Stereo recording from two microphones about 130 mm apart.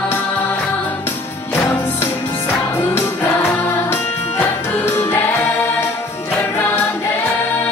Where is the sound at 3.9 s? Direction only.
20° left (ahead or behind).